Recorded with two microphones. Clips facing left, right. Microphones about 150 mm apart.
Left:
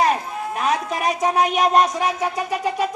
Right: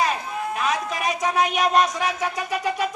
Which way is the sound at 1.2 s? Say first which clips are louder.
Left 3 dB; 35° left (ahead or behind).